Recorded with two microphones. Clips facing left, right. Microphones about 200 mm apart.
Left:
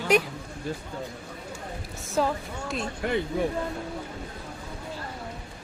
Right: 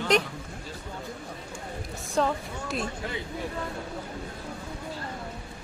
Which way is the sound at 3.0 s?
60° left (ahead or behind).